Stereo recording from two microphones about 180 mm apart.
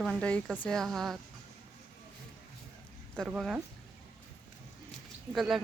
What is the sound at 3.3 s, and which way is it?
Speech, 5° right (ahead or behind).